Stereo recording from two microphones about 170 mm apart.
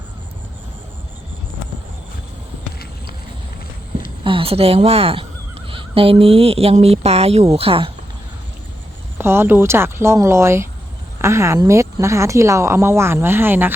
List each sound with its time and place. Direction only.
4.2 s speech: 30° right (ahead or behind)
9.1 s speech: 15° right (ahead or behind)